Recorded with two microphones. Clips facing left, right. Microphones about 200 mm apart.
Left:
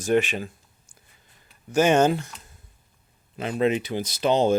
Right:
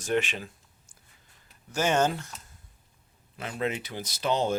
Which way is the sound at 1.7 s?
15° left (ahead or behind).